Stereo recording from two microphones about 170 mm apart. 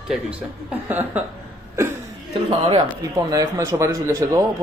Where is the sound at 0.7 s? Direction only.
10° right (ahead or behind).